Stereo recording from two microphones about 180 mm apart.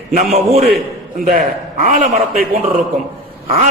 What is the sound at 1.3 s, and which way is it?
A man's voice, 45° right (ahead or behind).